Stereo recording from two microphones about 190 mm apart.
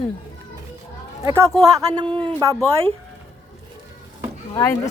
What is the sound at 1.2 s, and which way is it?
Speech, 15° right (ahead or behind).